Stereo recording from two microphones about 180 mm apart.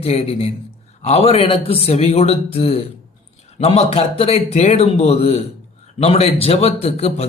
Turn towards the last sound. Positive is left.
turn(degrees=35)  # may be behind; listen again after turning